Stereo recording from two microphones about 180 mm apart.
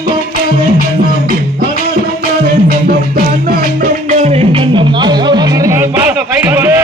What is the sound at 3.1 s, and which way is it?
Music, 55° right (ahead or behind).